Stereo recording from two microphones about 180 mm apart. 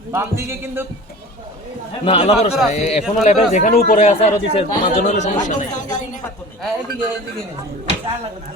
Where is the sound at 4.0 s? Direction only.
40° left (ahead or behind).